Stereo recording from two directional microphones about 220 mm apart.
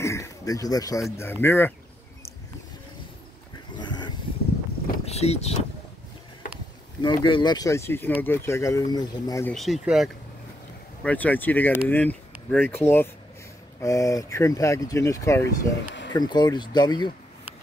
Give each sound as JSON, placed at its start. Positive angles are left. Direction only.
{"t": 0.0, "sound": "a sound", "side_deg": 15}
{"t": 1.4, "sound": "speech", "side_deg": 10}
{"t": 3.7, "sound": "a sound", "side_deg": 20}
{"t": 5.0, "sound": "speech", "side_deg": 30}
{"t": 7.0, "sound": "speech", "side_deg": 20}
{"t": 9.5, "sound": "speech", "side_deg": 0}